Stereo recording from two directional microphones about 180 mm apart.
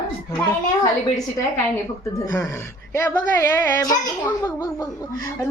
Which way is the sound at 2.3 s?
15° left (ahead or behind).